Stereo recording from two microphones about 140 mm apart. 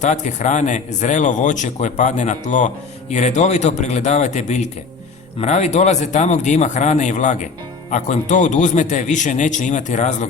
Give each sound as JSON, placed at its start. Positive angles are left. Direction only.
{"t": 0.0, "sound": "speech", "side_deg": 60}